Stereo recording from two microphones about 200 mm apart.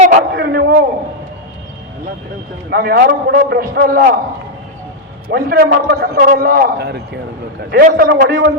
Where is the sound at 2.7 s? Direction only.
50° right (ahead or behind).